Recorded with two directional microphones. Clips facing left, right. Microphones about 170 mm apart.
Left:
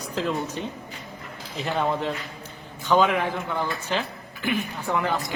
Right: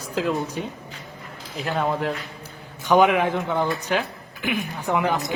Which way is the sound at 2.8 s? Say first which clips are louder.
Right 3 dB; 15° right (ahead or behind).